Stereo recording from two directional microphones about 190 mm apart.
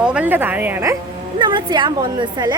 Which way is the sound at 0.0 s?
5° right (ahead or behind).